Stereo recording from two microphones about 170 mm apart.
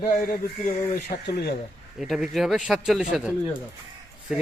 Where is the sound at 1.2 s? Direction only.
70° left (ahead or behind).